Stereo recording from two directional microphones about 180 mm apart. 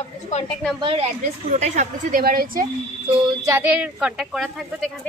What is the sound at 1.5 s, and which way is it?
Speech, 40° right (ahead or behind).